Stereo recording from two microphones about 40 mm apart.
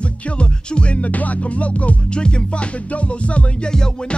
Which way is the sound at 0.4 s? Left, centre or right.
Left.